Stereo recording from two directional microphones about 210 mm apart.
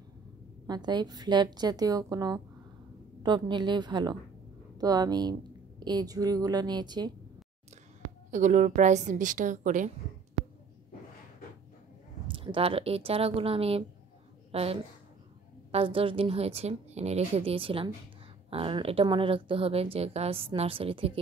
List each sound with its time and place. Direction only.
0.7 s a woman's voice: 20° right (ahead or behind)
8.3 s a woman's voice: 35° right (ahead or behind)
12.3 s a woman's voice: 25° right (ahead or behind)